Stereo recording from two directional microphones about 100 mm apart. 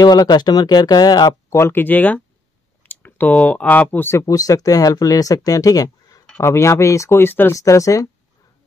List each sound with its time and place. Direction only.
0.0 s speech: 45° left (ahead or behind)
1.6 s speech: 20° left (ahead or behind)
4.2 s speech: 40° left (ahead or behind); by 7.5 s 20° left (ahead or behind)
7.5 s speech: 35° left (ahead or behind)